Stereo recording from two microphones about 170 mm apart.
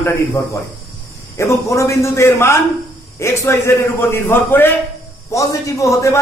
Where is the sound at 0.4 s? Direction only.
20° left (ahead or behind).